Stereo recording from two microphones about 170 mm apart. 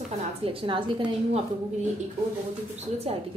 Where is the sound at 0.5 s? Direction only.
30° right (ahead or behind).